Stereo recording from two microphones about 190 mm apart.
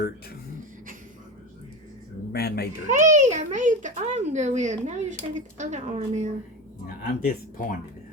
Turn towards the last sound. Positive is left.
turn(degrees=50)  # may be behind; listen again after turning